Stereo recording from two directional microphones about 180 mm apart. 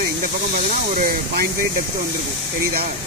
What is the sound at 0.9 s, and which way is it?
Speech, 55° right (ahead or behind).